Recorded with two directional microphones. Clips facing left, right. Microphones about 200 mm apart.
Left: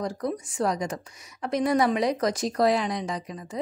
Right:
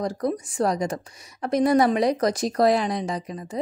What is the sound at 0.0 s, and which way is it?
A woman's voice, 40° right (ahead or behind).